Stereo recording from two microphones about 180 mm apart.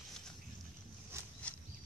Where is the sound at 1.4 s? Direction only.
10° left (ahead or behind).